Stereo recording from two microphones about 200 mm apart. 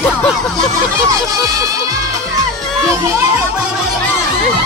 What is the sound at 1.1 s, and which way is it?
Speech, 15° right (ahead or behind).